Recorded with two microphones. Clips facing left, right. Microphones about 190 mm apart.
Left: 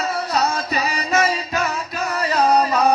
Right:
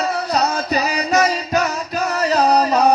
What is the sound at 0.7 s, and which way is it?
Music, 40° right (ahead or behind).